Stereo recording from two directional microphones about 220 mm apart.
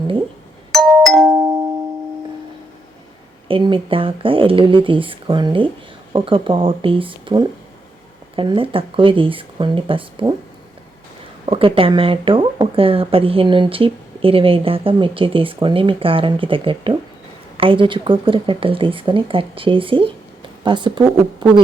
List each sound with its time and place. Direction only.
0.7 s doorbell: centre (ahead or behind)
3.5 s speech: 25° right (ahead or behind)
11.4 s speech: 25° right (ahead or behind)